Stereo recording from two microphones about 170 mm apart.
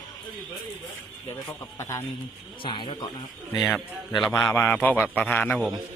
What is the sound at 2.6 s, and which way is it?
Speech, 30° left (ahead or behind).